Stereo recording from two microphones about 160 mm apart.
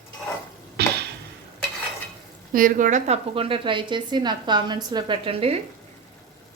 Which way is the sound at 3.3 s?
35° right (ahead or behind).